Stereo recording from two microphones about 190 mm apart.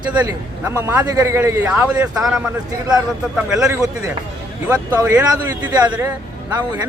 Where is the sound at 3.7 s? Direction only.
15° right (ahead or behind).